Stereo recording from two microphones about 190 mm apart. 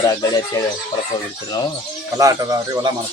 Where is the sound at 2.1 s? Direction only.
20° right (ahead or behind).